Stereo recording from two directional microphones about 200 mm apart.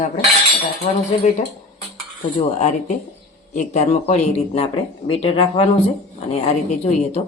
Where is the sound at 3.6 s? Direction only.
35° left (ahead or behind).